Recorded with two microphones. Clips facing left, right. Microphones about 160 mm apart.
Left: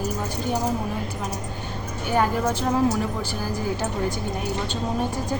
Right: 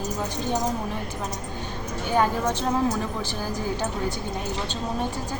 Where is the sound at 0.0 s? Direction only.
10° left (ahead or behind).